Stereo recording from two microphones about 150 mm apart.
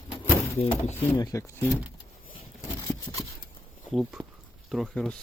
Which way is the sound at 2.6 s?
20° left (ahead or behind).